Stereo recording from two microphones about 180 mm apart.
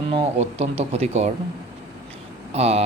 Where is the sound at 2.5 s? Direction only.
35° right (ahead or behind).